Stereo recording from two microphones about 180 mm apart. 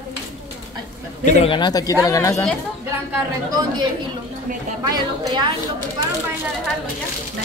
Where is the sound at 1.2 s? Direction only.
30° left (ahead or behind).